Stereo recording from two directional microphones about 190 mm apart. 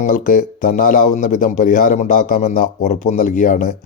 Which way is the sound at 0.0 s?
45° left (ahead or behind).